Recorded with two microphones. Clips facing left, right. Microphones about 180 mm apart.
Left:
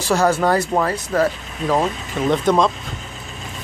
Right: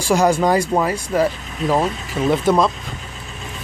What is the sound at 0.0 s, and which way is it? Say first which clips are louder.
Speech: right 1 dB; 15° right (ahead or behind).